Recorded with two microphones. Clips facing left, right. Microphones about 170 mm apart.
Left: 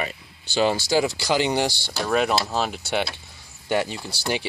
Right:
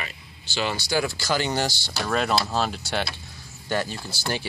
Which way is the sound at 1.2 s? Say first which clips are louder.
Left 3 dB; 15° left (ahead or behind).